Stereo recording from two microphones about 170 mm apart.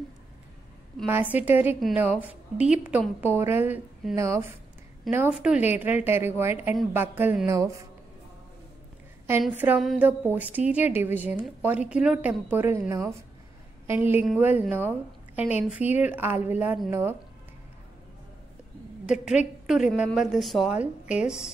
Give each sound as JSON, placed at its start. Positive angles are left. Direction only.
{"t": 1.0, "sound": "a woman's voice", "side_deg": -10}
{"t": 9.4, "sound": "a woman's voice", "side_deg": -10}
{"t": 19.0, "sound": "a woman's voice", "side_deg": -5}